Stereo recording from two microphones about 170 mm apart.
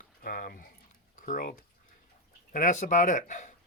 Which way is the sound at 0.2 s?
60° left (ahead or behind).